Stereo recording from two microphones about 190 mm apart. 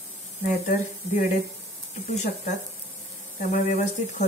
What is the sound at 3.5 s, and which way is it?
Speech, 40° left (ahead or behind).